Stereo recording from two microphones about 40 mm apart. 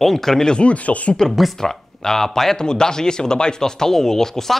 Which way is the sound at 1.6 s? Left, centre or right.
Centre.